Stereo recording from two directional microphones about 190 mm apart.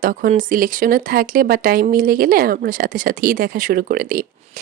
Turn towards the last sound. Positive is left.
turn(degrees=-50)  # may be behind; listen again after turning